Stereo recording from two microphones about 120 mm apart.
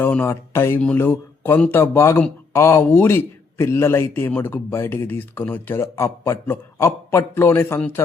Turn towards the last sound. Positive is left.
turn(degrees=15)  # may be behind; listen again after turning